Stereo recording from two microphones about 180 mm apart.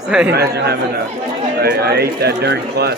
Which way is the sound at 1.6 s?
60° right (ahead or behind).